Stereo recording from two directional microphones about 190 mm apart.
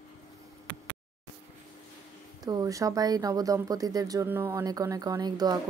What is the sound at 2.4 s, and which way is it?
Speech, 20° right (ahead or behind).